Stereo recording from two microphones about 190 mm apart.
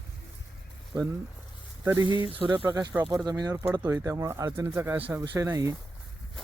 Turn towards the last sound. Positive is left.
turn(degrees=-15)  # may be behind; listen again after turning